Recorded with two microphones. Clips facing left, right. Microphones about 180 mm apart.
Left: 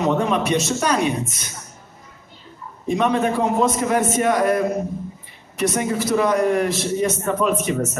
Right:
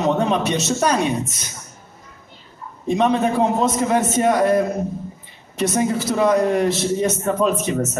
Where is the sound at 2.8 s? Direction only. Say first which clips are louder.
Right 1 dB; 30° right (ahead or behind).